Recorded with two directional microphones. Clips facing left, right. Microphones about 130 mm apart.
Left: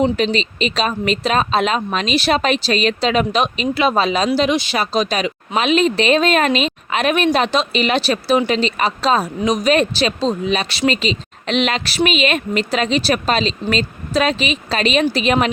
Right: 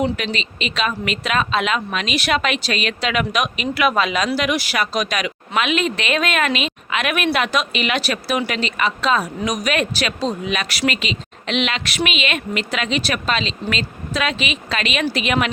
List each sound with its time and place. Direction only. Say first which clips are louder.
0.0 s speech: left 5 dB; 30° left (ahead or behind)